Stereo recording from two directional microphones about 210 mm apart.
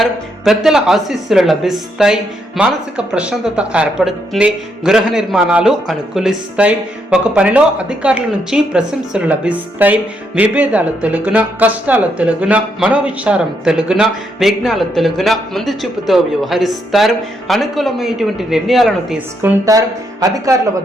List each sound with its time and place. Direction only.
0.0 s speech: centre (ahead or behind)
19.4 s a woman's voice: 15° right (ahead or behind)